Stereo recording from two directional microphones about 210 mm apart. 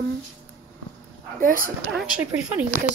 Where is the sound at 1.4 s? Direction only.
40° right (ahead or behind).